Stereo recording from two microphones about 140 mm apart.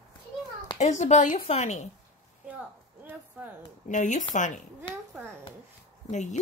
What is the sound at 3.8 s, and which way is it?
Speech, 60° left (ahead or behind).